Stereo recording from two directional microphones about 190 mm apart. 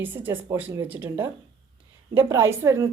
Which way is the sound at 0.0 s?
10° right (ahead or behind).